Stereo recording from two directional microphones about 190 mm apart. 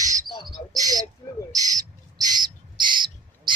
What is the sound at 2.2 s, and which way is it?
Bird, 20° right (ahead or behind).